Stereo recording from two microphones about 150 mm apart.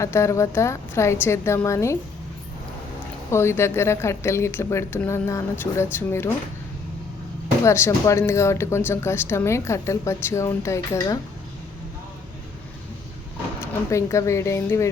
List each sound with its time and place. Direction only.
0.0 s a woman's voice: 20° left (ahead or behind)
3.3 s a woman's voice: 15° left (ahead or behind)
7.6 s a woman's voice: 20° left (ahead or behind)
13.6 s a woman's voice: 20° left (ahead or behind)